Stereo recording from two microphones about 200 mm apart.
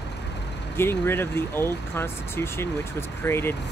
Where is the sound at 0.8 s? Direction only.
10° left (ahead or behind).